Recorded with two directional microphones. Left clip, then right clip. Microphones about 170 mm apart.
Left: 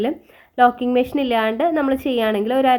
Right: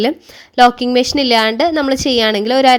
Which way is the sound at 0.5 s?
60° right (ahead or behind).